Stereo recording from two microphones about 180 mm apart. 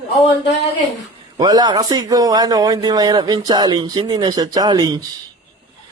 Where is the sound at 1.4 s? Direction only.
20° right (ahead or behind).